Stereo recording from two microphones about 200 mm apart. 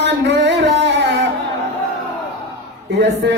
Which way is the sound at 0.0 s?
60° right (ahead or behind).